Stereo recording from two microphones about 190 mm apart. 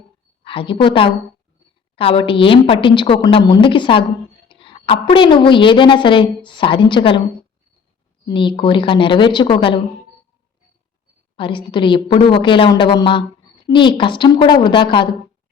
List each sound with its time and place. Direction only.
0.4 s a woman's voice: 30° left (ahead or behind)
8.3 s a woman's voice: 25° left (ahead or behind)
11.3 s a woman's voice: 25° left (ahead or behind)